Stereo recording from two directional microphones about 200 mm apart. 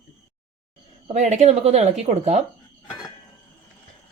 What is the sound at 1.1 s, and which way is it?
Speech, 35° right (ahead or behind).